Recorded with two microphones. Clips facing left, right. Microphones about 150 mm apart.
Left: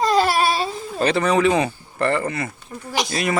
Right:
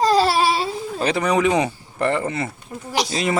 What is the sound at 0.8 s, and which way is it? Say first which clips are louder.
Speech: left 1 dB; 10° right (ahead or behind).